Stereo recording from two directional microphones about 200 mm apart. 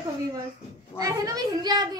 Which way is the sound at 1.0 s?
20° right (ahead or behind).